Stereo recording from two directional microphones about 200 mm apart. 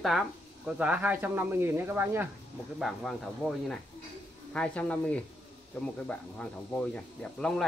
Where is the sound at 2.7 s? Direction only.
Centre (ahead or behind).